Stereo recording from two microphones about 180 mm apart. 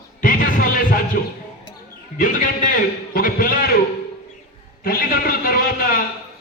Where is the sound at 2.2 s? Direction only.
50° left (ahead or behind).